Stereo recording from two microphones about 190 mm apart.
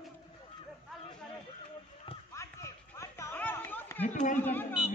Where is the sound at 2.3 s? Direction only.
15° left (ahead or behind).